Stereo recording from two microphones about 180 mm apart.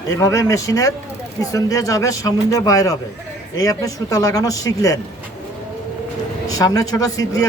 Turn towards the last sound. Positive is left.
turn(degrees=20)  # may be behind; listen again after turning